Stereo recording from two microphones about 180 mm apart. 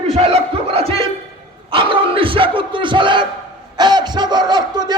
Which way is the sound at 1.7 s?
30° right (ahead or behind).